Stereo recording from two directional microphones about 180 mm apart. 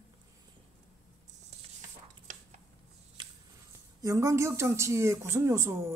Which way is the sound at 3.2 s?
25° right (ahead or behind).